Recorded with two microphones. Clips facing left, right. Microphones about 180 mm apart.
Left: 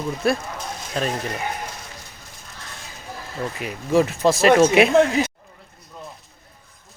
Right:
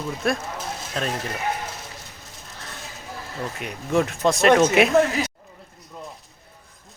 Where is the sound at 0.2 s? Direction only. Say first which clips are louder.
Left 3 dB; centre (ahead or behind).